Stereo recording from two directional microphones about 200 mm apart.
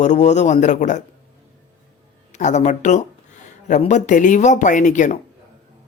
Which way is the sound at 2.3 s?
35° left (ahead or behind).